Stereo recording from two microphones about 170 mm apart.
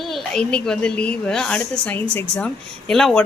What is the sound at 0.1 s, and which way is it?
Speech, 5° left (ahead or behind).